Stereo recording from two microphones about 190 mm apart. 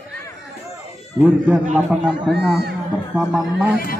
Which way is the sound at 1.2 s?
10° right (ahead or behind).